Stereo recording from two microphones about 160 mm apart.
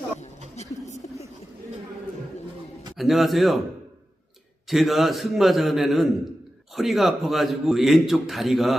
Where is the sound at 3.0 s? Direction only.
Centre (ahead or behind).